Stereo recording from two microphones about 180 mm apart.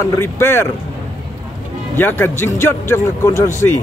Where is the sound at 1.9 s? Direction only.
10° left (ahead or behind).